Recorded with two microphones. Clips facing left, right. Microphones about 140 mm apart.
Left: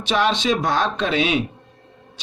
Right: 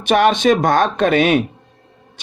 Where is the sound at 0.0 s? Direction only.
55° right (ahead or behind).